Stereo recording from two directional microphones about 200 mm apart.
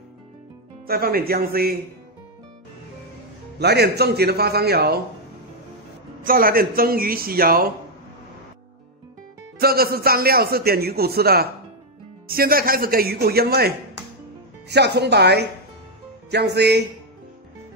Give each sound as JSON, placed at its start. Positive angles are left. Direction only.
{"t": 0.8, "sound": "a man's voice", "side_deg": -50}
{"t": 3.5, "sound": "a man's voice", "side_deg": -55}
{"t": 6.2, "sound": "a man's voice", "side_deg": -45}
{"t": 9.6, "sound": "a man's voice", "side_deg": -50}